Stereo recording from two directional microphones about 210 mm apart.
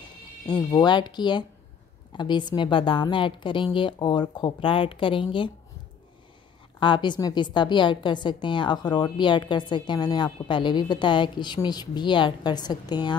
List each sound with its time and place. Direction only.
0.5 s a woman's voice: 20° left (ahead or behind)
6.8 s a woman's voice: 20° left (ahead or behind)